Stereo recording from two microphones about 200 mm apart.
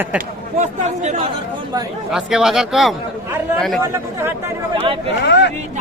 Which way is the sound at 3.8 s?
15° right (ahead or behind).